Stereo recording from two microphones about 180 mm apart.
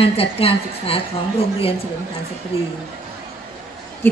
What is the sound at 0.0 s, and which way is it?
A woman's voice, 30° left (ahead or behind).